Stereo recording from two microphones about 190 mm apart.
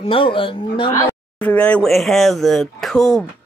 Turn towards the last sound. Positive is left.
turn(degrees=0)  # may be behind; listen again after turning